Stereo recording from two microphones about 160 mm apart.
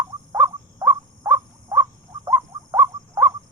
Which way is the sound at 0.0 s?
15° right (ahead or behind).